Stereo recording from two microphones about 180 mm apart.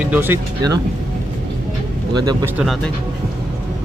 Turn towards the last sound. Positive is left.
turn(degrees=0)  # may be behind; listen again after turning